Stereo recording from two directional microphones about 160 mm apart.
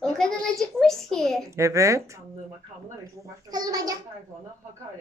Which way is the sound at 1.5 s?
20° right (ahead or behind).